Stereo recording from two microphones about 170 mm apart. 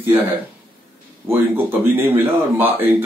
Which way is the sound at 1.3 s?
10° right (ahead or behind).